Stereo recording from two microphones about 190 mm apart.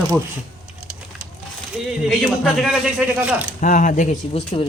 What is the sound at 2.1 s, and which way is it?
Speech, centre (ahead or behind).